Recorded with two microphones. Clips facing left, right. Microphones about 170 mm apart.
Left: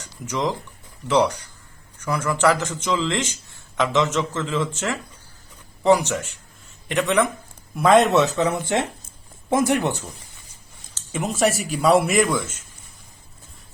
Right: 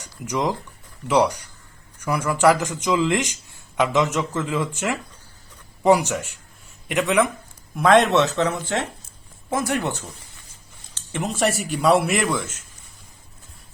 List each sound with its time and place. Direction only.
0.0 s a man's voice: 15° right (ahead or behind); by 10.0 s 15° left (ahead or behind)
11.1 s speech: 5° left (ahead or behind)